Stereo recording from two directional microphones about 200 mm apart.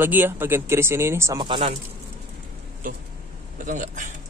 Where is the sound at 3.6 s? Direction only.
40° right (ahead or behind).